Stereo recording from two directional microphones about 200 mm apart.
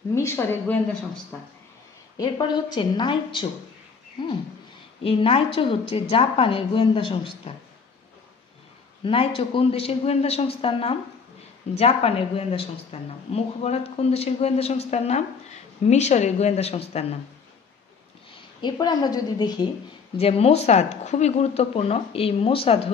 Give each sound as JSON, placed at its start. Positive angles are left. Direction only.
{"t": 0.1, "sound": "a woman's voice", "side_deg": 15}
{"t": 2.1, "sound": "a woman's voice", "side_deg": 20}
{"t": 9.0, "sound": "a woman's voice", "side_deg": 25}
{"t": 18.6, "sound": "a woman's voice", "side_deg": 20}